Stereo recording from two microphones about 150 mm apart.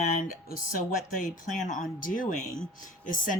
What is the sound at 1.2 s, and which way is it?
Speech, 60° left (ahead or behind).